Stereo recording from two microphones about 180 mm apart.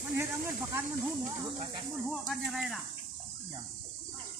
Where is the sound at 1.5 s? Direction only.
30° right (ahead or behind).